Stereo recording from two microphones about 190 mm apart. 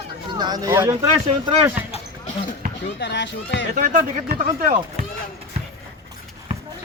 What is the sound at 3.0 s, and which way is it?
Speech, 65° left (ahead or behind).